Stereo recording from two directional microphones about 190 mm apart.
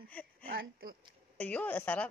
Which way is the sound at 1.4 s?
5° left (ahead or behind).